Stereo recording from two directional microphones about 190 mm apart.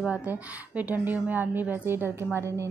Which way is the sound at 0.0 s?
5° right (ahead or behind).